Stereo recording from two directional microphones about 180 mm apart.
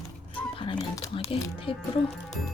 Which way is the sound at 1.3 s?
30° left (ahead or behind).